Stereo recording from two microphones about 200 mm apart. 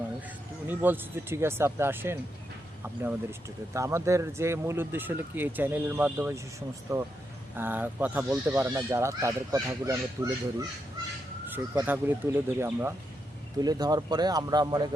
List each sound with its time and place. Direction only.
0.7 s speech: 10° right (ahead or behind)
3.8 s speech: 15° right (ahead or behind)
11.4 s speech: 10° right (ahead or behind)